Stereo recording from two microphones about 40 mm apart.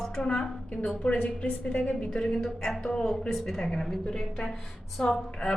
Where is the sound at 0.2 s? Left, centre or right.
Centre.